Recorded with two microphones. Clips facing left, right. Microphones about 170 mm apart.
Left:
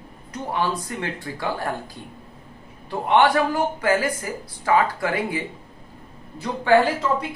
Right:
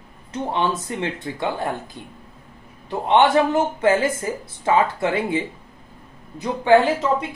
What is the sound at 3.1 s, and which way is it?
Speech, 25° right (ahead or behind).